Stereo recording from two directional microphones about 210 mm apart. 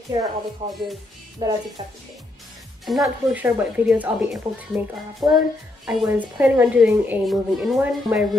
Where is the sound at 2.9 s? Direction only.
Centre (ahead or behind).